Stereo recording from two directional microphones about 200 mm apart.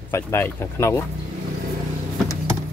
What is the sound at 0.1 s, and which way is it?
Speech, 10° left (ahead or behind).